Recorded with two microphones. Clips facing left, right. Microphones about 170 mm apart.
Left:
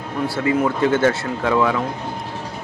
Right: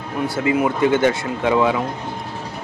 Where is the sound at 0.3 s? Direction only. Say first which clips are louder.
Even; 20° right (ahead or behind).